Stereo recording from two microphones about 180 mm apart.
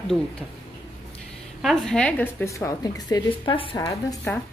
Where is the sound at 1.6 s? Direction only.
Centre (ahead or behind); by 4.4 s 15° left (ahead or behind).